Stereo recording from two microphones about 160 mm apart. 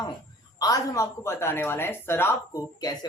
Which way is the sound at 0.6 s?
20° left (ahead or behind).